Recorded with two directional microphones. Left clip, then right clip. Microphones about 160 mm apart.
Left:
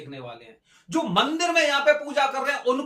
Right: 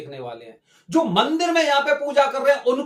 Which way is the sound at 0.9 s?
20° right (ahead or behind).